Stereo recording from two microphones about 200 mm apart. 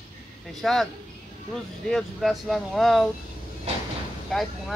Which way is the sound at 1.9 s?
Centre (ahead or behind).